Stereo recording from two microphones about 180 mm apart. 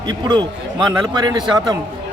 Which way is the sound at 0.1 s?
25° right (ahead or behind).